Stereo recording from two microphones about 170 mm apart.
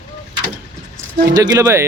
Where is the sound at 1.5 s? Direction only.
20° right (ahead or behind).